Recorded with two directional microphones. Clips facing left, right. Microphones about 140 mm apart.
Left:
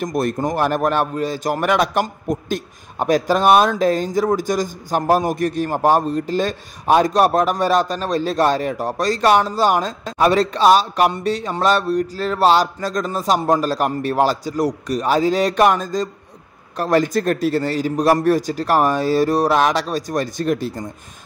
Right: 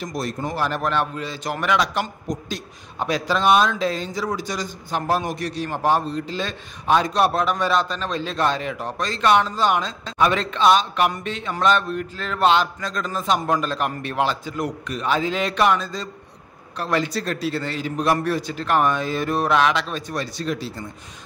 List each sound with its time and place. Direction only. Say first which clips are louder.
0.0 s a man's voice: left 7 dB; 55° left (ahead or behind)